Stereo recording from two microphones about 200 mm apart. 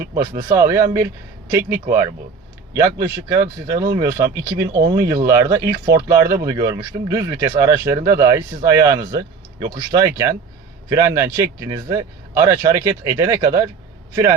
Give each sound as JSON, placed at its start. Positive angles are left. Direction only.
{"t": 0.0, "sound": "speech", "side_deg": -15}
{"t": 1.9, "sound": "speech", "side_deg": -15}